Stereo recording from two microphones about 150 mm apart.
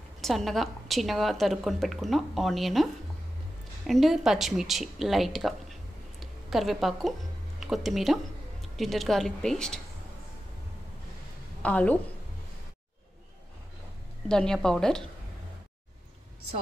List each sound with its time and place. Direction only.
0.2 s a woman's voice: centre (ahead or behind)
11.6 s a woman's voice: 10° left (ahead or behind)
14.3 s a woman's voice: 5° left (ahead or behind)